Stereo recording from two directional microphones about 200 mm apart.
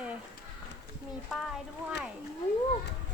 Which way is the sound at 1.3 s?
Centre (ahead or behind).